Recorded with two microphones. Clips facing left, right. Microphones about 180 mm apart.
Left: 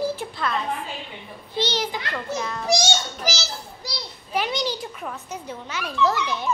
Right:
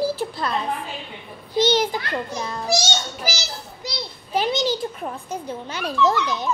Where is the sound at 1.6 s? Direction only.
50° right (ahead or behind).